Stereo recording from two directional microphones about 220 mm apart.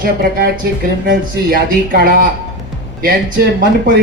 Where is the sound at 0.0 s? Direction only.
40° right (ahead or behind).